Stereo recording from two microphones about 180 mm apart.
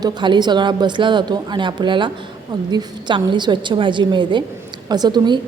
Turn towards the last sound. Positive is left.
turn(degrees=-25)  # may be behind; listen again after turning